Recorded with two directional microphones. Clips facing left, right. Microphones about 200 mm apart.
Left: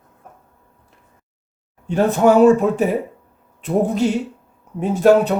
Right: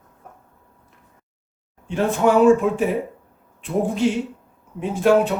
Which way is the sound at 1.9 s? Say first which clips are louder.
Left 4 dB; 40° left (ahead or behind).